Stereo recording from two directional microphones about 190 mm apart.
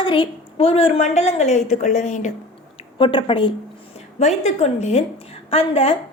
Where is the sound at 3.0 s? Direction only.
25° left (ahead or behind).